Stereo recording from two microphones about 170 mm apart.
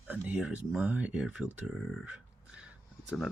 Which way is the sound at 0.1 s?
10° right (ahead or behind).